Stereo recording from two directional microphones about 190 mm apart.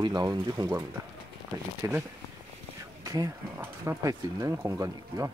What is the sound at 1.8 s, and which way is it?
Speech, 15° right (ahead or behind).